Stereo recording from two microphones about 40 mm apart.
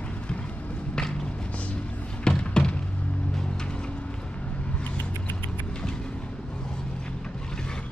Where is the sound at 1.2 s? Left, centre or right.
Left.